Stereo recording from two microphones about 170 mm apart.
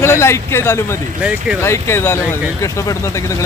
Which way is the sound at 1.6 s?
15° left (ahead or behind).